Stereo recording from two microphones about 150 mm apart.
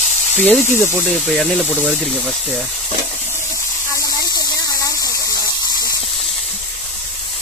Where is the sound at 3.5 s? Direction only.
20° left (ahead or behind).